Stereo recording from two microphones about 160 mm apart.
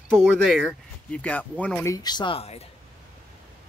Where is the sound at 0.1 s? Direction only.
Centre (ahead or behind).